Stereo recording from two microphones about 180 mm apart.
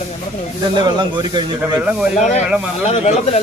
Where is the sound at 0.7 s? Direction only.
25° right (ahead or behind).